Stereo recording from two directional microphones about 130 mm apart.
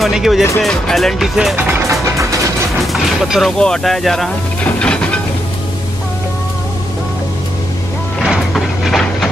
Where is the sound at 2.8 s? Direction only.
Centre (ahead or behind).